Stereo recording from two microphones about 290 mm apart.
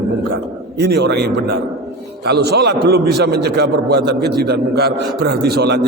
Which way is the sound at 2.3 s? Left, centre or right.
Right.